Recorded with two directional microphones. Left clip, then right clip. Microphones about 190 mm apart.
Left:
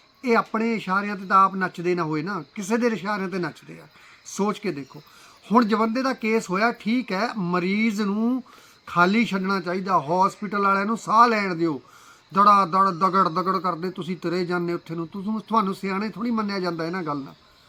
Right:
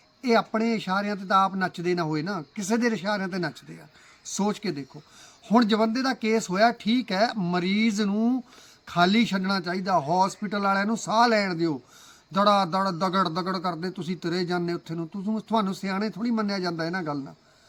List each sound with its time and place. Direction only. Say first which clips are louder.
0.3 s speech: left 1 dB; 35° right (ahead or behind)